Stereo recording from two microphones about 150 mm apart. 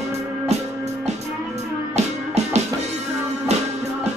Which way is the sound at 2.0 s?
45° right (ahead or behind).